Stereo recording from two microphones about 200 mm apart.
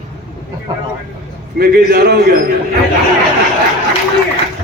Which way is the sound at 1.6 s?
50° right (ahead or behind).